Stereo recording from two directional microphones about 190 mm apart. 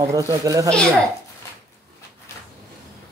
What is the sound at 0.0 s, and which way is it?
Speech, 15° right (ahead or behind).